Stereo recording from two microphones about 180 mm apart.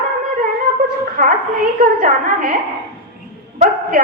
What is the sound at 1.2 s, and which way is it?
A woman's voice, 45° right (ahead or behind).